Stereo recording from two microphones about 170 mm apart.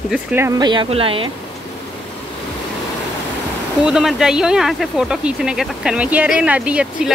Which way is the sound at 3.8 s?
5° right (ahead or behind).